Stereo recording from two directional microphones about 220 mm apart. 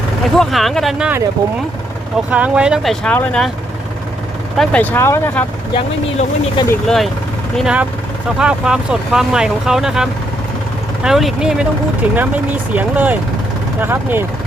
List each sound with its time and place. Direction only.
0.3 s speech: centre (ahead or behind)
2.3 s speech: 5° right (ahead or behind)
4.5 s speech: 5° left (ahead or behind)
5.7 s speech: 25° left (ahead or behind)
6.7 s speech: centre (ahead or behind)